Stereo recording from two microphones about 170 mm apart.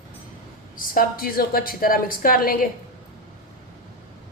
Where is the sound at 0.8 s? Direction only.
60° left (ahead or behind).